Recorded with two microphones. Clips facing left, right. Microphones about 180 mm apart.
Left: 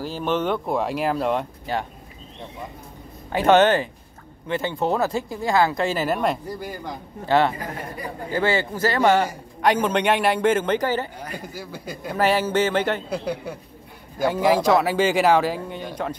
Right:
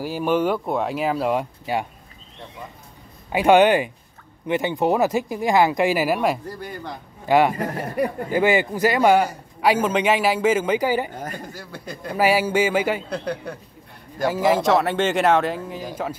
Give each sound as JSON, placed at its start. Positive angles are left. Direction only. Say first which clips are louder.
{"t": 0.0, "sound": "a man's voice", "louder": "right 3 dB", "side_deg": -10}
{"t": 3.3, "sound": "a man's voice", "louder": "right 1 dB", "side_deg": -10}
{"t": 7.5, "sound": "speech", "louder": "right 7 dB", "side_deg": -70}
{"t": 8.3, "sound": "a man's voice", "louder": "right 1 dB", "side_deg": -15}
{"t": 11.3, "sound": "speech", "louder": "left 1 dB", "side_deg": 5}
{"t": 12.2, "sound": "a man's voice", "louder": "right 1 dB", "side_deg": -10}
{"t": 13.1, "sound": "speech", "louder": "even", "side_deg": 5}